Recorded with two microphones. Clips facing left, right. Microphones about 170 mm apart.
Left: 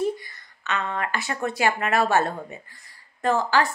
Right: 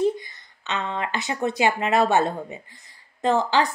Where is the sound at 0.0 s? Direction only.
20° right (ahead or behind).